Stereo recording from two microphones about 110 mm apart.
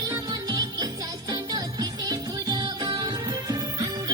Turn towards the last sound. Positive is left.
turn(degrees=-35)  # may be behind; listen again after turning